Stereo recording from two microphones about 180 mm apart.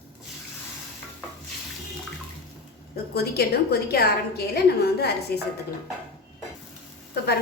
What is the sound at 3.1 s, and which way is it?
A woman's voice, 60° left (ahead or behind).